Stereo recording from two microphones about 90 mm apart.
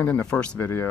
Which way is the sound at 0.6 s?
25° left (ahead or behind).